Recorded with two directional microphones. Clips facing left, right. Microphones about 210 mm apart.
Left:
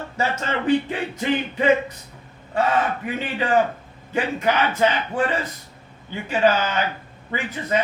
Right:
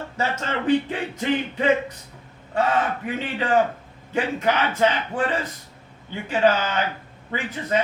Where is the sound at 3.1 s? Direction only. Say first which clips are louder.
Left 1 dB; 10° left (ahead or behind).